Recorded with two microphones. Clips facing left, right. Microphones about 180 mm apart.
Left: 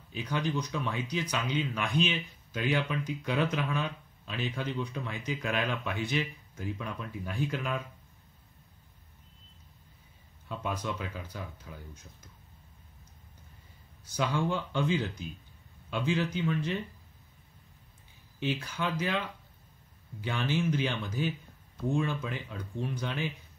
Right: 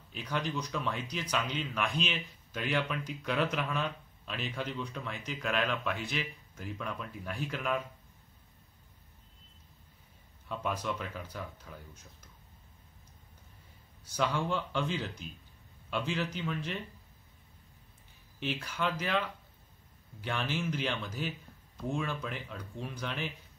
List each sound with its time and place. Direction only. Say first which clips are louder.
0.1 s speech: left 3 dB; centre (ahead or behind)
10.7 s speech: left 1 dB; centre (ahead or behind)
14.1 s speech: left 1 dB; 5° left (ahead or behind)
18.4 s speech: left 2 dB; centre (ahead or behind)
20.2 s speech: left 4 dB; centre (ahead or behind)